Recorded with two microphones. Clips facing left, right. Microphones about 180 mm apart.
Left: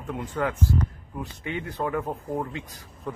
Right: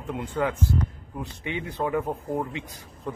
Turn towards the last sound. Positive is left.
turn(degrees=-15)  # may be behind; listen again after turning